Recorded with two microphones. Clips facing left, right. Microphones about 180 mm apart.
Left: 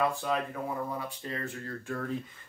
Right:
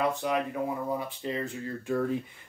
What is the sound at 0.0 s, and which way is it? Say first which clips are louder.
Speech: right 2 dB; 20° right (ahead or behind).